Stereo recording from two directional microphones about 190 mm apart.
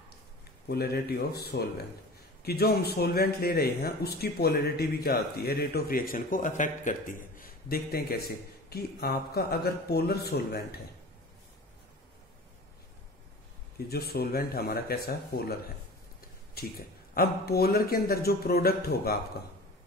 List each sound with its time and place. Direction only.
0.7 s speech: 55° left (ahead or behind)
13.7 s speech: 55° left (ahead or behind)
17.1 s speech: 50° left (ahead or behind)